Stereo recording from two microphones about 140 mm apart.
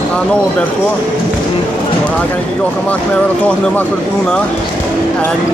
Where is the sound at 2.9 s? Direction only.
10° left (ahead or behind).